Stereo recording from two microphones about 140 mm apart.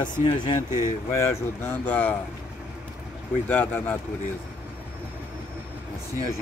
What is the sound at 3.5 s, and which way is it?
Speech, 10° left (ahead or behind).